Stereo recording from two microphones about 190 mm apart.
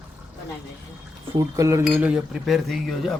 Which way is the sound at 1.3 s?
15° right (ahead or behind).